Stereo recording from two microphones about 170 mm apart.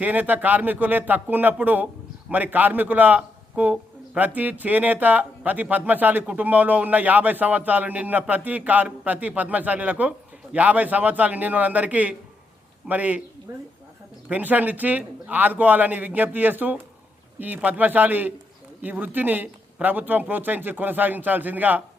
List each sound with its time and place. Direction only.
0.0 s a man's voice: 10° right (ahead or behind)